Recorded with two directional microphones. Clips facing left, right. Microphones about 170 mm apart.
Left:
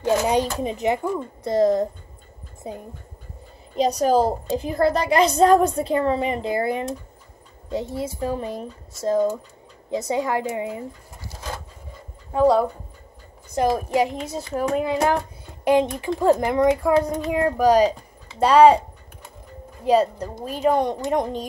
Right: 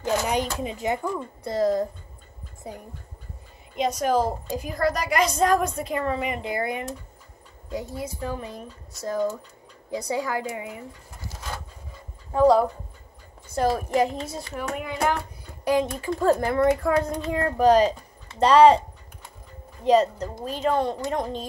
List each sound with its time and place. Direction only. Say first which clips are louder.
0.0 s a woman's voice: left 5 dB; 25° left (ahead or behind)
3.7 s a woman's voice: left 4 dB; 35° left (ahead or behind)
12.3 s speech: even; 5° left (ahead or behind)
13.6 s speech: left 2 dB; 15° left (ahead or behind)
14.5 s a child's voice: left 11 dB; 35° left (ahead or behind); by 18.8 s 10° left (ahead or behind)
19.9 s speech: left 1 dB; 10° left (ahead or behind)